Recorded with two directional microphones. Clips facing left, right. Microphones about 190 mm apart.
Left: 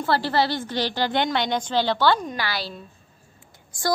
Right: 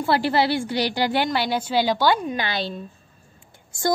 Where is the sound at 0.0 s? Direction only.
15° right (ahead or behind).